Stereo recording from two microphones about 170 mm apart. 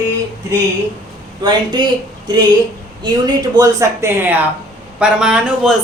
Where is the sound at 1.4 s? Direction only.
25° right (ahead or behind).